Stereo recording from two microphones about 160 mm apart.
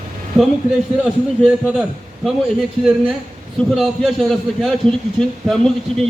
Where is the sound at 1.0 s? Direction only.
Centre (ahead or behind).